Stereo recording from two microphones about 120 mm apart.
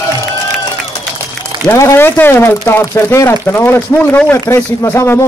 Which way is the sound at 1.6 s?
20° left (ahead or behind).